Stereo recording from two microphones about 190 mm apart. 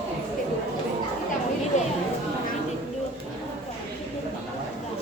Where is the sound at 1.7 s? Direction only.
40° left (ahead or behind).